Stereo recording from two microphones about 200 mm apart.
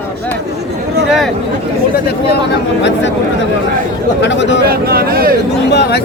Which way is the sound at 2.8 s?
60° left (ahead or behind).